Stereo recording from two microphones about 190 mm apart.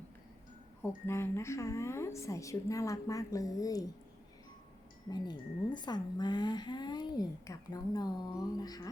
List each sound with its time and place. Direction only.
0.8 s a woman's voice: 15° left (ahead or behind)
5.1 s speech: 20° left (ahead or behind)